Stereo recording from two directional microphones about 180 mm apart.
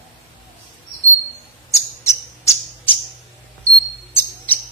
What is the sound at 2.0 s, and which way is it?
Squawk, 15° left (ahead or behind).